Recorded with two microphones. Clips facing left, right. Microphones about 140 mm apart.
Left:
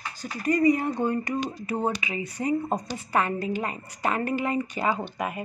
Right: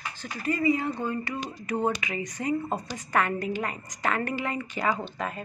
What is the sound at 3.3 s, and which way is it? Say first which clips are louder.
A woman's voice: left 1 dB; 25° left (ahead or behind).